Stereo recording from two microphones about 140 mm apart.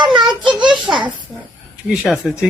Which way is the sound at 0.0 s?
35° right (ahead or behind).